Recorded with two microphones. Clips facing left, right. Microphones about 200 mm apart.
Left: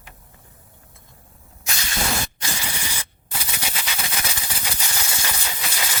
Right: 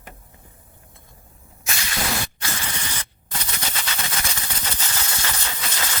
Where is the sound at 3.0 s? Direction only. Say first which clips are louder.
Even; 10° left (ahead or behind).